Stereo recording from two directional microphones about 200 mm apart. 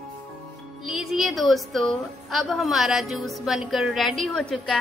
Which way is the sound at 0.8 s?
Centre (ahead or behind).